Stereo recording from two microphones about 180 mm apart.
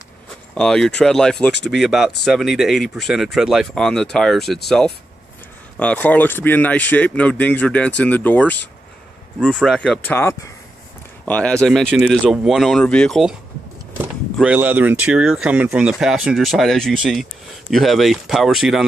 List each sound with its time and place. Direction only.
0.6 s speech: 5° left (ahead or behind)
14.4 s speech: 10° right (ahead or behind)